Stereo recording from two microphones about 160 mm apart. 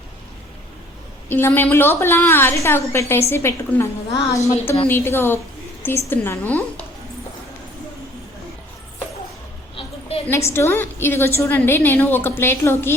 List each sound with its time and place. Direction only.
1.3 s a woman's voice: 15° left (ahead or behind)
10.2 s a woman's voice: 15° left (ahead or behind)